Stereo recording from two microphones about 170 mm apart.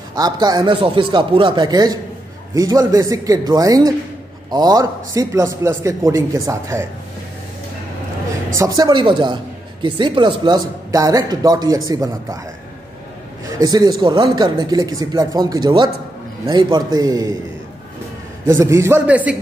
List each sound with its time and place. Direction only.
0.1 s a man's voice: 25° right (ahead or behind)
8.5 s a man's voice: 20° right (ahead or behind)
13.5 s a man's voice: 20° right (ahead or behind)
18.5 s a man's voice: 15° right (ahead or behind)